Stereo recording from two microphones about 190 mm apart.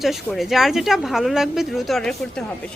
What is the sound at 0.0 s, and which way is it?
A woman's voice, centre (ahead or behind).